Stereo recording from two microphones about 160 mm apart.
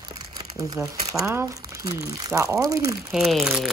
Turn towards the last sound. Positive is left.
turn(degrees=0)  # may be behind; listen again after turning